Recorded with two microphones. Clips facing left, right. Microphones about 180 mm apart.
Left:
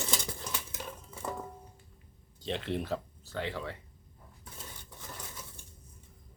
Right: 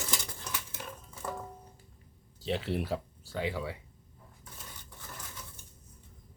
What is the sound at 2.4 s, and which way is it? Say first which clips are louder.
Speech: right 2 dB; 5° right (ahead or behind).